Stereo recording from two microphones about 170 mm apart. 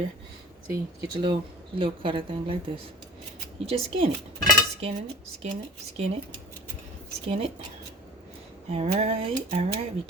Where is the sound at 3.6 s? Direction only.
35° right (ahead or behind).